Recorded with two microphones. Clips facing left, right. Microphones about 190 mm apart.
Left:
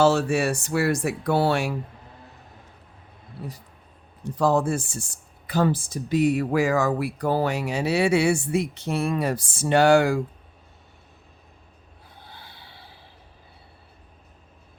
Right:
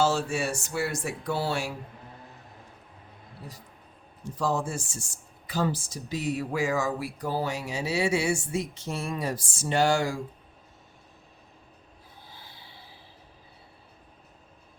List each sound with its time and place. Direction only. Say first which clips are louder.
0.0 s speech: left 6 dB; 65° left (ahead or behind)
4.4 s speech: left 7 dB; 60° left (ahead or behind)
12.2 s snort: left 4 dB; 65° left (ahead or behind)